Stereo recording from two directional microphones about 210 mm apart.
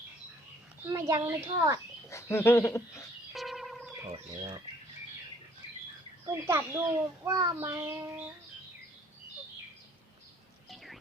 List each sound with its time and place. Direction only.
0.9 s child singing: 15° right (ahead or behind)
2.0 s speech: 10° left (ahead or behind)
3.3 s a sound: centre (ahead or behind)
4.1 s speech: 20° right (ahead or behind)
6.2 s child singing: 10° right (ahead or behind)